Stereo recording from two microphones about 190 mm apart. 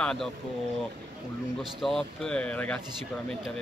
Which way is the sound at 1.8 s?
5° left (ahead or behind).